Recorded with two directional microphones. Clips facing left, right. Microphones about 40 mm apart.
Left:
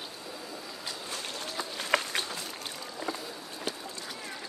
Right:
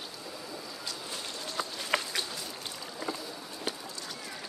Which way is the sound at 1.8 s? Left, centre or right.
Left.